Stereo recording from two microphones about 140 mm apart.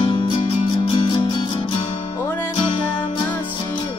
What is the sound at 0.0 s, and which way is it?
Music, 35° left (ahead or behind).